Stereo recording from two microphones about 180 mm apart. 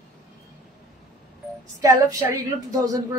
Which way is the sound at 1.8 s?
20° right (ahead or behind).